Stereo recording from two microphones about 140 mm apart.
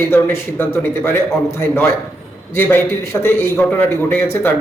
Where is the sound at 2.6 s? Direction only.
15° left (ahead or behind).